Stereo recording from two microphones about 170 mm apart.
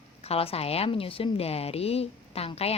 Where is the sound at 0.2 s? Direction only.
35° left (ahead or behind).